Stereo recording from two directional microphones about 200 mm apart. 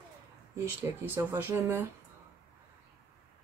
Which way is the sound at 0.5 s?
10° right (ahead or behind).